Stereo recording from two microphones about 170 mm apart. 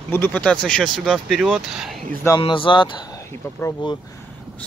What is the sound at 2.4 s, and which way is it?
Speech, 30° left (ahead or behind).